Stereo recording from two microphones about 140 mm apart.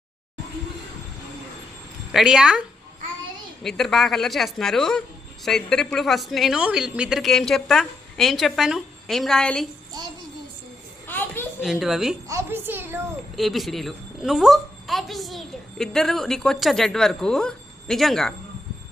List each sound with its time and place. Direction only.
2.1 s speech: 5° right (ahead or behind)
10.0 s a child's voice: 30° right (ahead or behind)
11.0 s a sound: 15° left (ahead or behind)
11.6 s speech: centre (ahead or behind)
12.3 s a woman's voice: 20° right (ahead or behind)
13.3 s speech: centre (ahead or behind)